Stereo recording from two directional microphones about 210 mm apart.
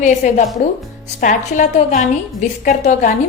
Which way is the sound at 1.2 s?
35° left (ahead or behind).